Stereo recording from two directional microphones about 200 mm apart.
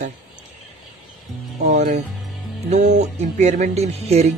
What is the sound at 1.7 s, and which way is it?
Speech, 40° right (ahead or behind).